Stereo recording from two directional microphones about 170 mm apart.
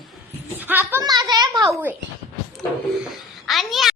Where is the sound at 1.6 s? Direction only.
15° right (ahead or behind).